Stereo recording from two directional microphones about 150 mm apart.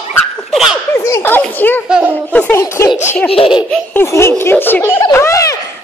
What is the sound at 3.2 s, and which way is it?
Laughter, 40° left (ahead or behind).